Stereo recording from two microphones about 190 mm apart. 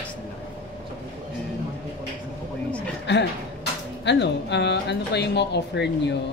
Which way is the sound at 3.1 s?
65° left (ahead or behind).